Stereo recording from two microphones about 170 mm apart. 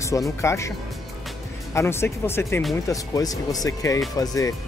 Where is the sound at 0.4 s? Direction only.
15° left (ahead or behind).